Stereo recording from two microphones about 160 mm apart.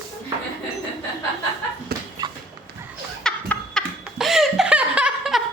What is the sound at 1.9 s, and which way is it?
Dog, 80° right.